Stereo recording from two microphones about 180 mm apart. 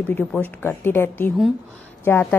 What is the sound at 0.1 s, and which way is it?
A woman's voice, 10° left (ahead or behind).